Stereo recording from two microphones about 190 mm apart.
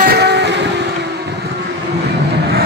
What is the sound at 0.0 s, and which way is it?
Vehicle, 60° right (ahead or behind).